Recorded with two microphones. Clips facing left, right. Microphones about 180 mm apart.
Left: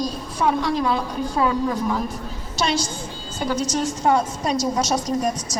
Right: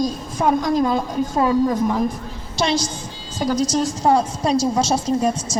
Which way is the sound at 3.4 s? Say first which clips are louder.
Right 4 dB; 40° right (ahead or behind).